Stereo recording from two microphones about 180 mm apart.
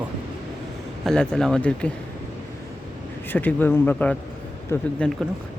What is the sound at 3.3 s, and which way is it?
Speech, 10° left (ahead or behind).